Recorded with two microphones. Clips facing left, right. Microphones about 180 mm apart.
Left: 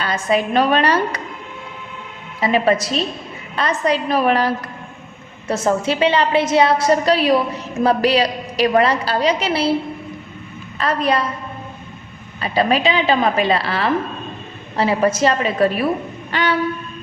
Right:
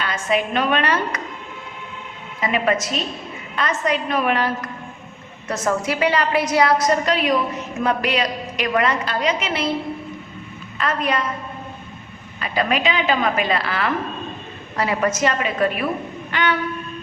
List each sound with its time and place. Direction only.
0.0 s a woman's voice: 35° left (ahead or behind)
2.4 s a woman's voice: 35° left (ahead or behind)
10.8 s a woman's voice: 35° left (ahead or behind)
12.4 s a woman's voice: 30° left (ahead or behind)
16.3 s train: 35° left (ahead or behind)